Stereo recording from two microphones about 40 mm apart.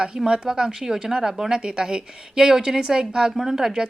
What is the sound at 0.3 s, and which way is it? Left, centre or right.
Speech, centre.